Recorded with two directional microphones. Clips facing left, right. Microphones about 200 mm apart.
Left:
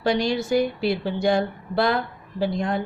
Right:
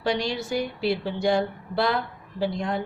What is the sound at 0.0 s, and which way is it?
A woman's voice, 45° left (ahead or behind).